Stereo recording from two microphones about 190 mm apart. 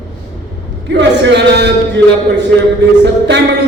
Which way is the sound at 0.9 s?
65° right (ahead or behind).